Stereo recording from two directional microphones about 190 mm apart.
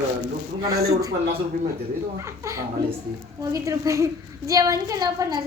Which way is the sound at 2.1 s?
15° right (ahead or behind).